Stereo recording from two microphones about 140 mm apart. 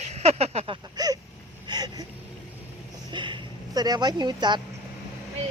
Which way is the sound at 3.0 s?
35° right (ahead or behind).